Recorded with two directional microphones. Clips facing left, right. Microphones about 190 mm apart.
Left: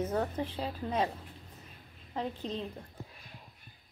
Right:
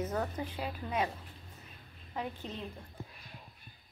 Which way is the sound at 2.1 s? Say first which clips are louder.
Left 4 dB; 30° left (ahead or behind).